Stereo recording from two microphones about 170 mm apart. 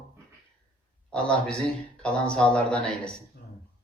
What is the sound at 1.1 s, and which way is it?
A man's voice, 5° left (ahead or behind).